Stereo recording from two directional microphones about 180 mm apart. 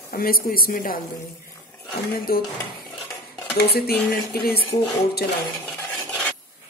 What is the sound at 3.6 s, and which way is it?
Speech, 60° left (ahead or behind).